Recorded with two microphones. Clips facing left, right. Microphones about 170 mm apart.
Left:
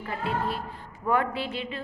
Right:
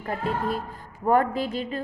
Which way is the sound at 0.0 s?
45° right (ahead or behind).